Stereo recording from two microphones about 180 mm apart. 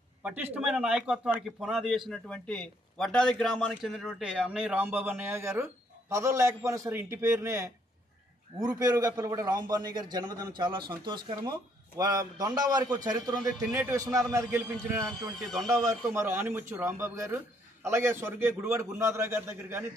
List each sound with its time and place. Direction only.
0.2 s a man's voice: 10° right (ahead or behind)
15.3 s a man's voice: centre (ahead or behind)
15.8 s a man's voice: 15° right (ahead or behind)